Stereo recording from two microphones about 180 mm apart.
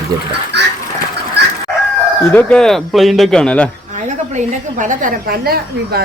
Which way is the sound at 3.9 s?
45° right (ahead or behind).